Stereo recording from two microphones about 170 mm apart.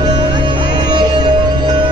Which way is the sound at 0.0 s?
25° right (ahead or behind).